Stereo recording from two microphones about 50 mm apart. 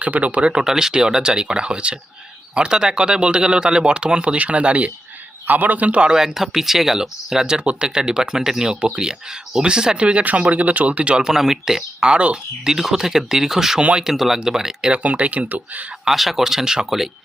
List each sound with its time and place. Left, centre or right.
0.0 s speech: right
0.5 s a man's voice: centre; by 6.0 s right
6.0 s speech: centre
14.9 s speech: right
16.0 s speech: centre